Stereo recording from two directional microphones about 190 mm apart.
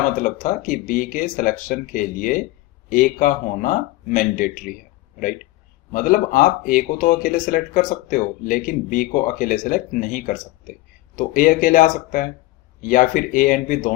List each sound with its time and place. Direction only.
0.2 s speech: 45° left (ahead or behind)
5.9 s speech: 45° left (ahead or behind)